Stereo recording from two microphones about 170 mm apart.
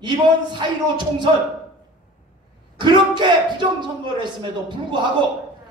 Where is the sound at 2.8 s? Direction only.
25° right (ahead or behind).